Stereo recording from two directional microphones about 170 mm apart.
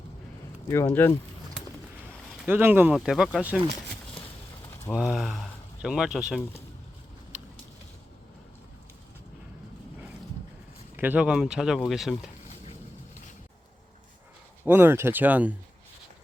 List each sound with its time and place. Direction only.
0.7 s speech: 15° left (ahead or behind)
2.4 s speech: 10° right (ahead or behind)
4.9 s speech: 5° right (ahead or behind)
10.9 s speech: 10° right (ahead or behind)
14.6 s speech: 15° right (ahead or behind)